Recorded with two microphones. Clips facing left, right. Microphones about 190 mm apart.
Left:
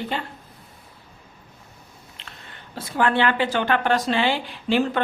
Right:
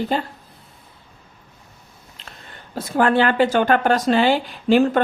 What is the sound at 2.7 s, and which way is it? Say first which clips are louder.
Speech: right 4 dB; 45° right (ahead or behind).